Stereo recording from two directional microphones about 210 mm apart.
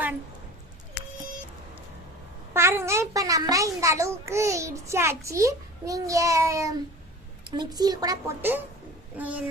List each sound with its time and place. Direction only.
2.5 s a child's voice: 10° right (ahead or behind)